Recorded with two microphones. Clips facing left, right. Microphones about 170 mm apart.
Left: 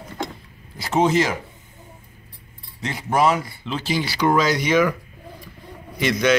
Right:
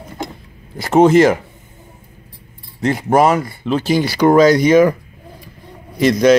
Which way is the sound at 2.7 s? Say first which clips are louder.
Right 8 dB; 50° right (ahead or behind).